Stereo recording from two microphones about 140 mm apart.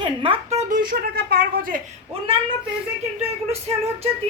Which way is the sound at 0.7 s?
85° right.